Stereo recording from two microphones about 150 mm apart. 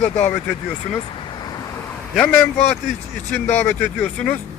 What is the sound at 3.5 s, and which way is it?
Speech, 15° left (ahead or behind).